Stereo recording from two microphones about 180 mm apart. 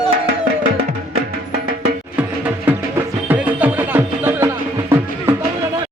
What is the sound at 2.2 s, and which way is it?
Music, 10° right (ahead or behind).